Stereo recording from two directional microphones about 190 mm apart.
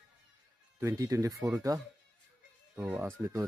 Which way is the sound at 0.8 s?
15° right (ahead or behind).